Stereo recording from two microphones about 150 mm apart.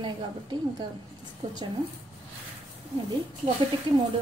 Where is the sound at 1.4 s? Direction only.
30° right (ahead or behind).